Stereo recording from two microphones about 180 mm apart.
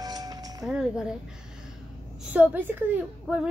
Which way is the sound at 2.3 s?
10° right (ahead or behind).